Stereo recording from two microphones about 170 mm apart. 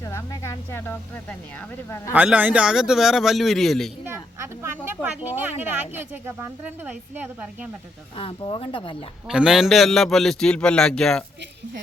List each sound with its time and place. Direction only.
0.0 s speech: 15° left (ahead or behind)
2.1 s a man's voice: 10° right (ahead or behind)
4.0 s speech: 15° right (ahead or behind)
8.1 s speech: 30° left (ahead or behind)
9.2 s a man's voice: 5° right (ahead or behind)